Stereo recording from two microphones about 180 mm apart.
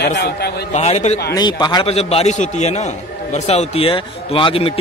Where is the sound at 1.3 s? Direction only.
25° left (ahead or behind).